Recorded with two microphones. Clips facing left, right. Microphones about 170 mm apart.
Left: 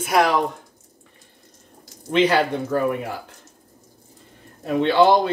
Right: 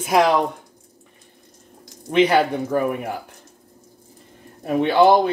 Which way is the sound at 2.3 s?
15° right (ahead or behind).